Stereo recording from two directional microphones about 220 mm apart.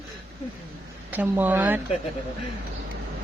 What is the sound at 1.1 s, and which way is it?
Speech, 10° right (ahead or behind).